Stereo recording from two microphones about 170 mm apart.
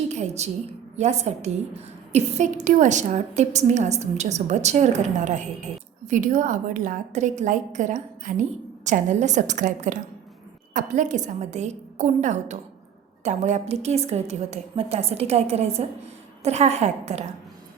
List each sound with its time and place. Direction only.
0.1 s a woman's voice: 40° right (ahead or behind)